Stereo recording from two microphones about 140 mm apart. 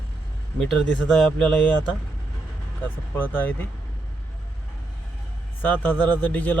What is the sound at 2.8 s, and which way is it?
Speech, 15° left (ahead or behind).